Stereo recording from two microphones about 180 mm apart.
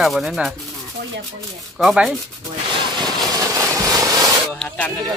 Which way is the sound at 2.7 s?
25° right (ahead or behind).